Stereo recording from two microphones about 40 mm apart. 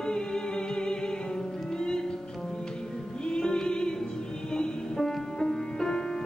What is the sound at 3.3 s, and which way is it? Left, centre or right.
Music, left.